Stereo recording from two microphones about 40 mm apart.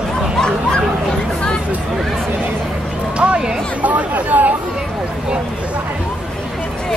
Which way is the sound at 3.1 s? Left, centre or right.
Right.